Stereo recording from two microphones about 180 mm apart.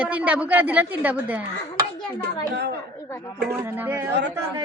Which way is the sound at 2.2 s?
65° right (ahead or behind).